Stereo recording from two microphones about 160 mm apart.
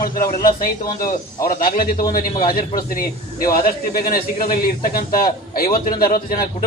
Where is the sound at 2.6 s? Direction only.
65° left (ahead or behind).